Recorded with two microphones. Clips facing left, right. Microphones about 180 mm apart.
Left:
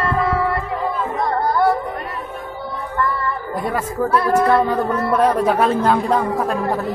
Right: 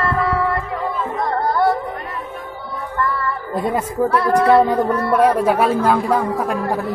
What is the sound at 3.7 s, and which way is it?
A woman's voice, 20° right (ahead or behind).